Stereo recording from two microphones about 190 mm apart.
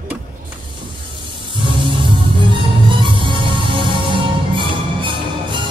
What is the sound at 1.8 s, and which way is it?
Music, 25° right (ahead or behind).